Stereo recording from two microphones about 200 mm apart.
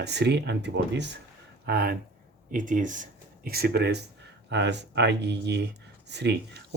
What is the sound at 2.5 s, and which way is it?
Speech, 40° right (ahead or behind).